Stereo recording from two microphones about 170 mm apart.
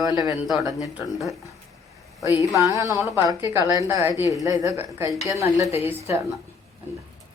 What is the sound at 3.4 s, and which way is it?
A woman's voice, 20° right (ahead or behind).